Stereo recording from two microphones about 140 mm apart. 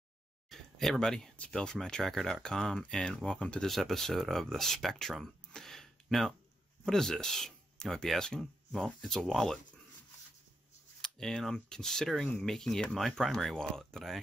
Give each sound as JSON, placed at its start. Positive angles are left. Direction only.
{"t": 0.5, "sound": "speech", "side_deg": 0}
{"t": 11.0, "sound": "speech", "side_deg": 5}